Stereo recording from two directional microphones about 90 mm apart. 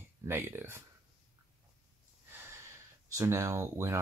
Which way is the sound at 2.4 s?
30° right (ahead or behind).